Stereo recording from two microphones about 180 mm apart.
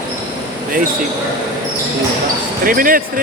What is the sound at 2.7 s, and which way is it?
Speech, 50° right (ahead or behind).